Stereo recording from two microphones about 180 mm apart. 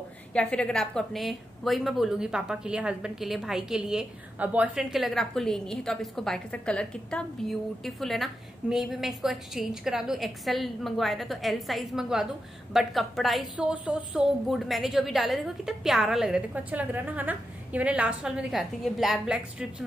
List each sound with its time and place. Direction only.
0.3 s a woman's voice: 5° left (ahead or behind)